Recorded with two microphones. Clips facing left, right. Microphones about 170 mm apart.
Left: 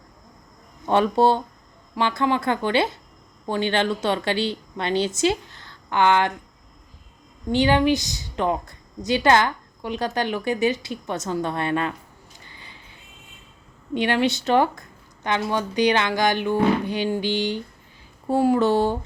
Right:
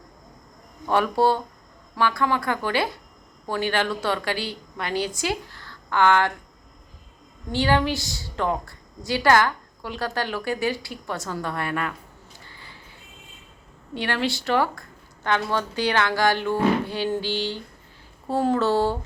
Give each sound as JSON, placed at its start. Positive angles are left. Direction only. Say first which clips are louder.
{"t": 0.9, "sound": "a woman's voice", "louder": "left 2 dB", "side_deg": 25}
{"t": 7.5, "sound": "a woman's voice", "louder": "left 4 dB", "side_deg": 20}
{"t": 12.4, "sound": "a sound", "louder": "left 1 dB", "side_deg": 20}
{"t": 13.9, "sound": "a woman's voice", "louder": "left 5 dB", "side_deg": 20}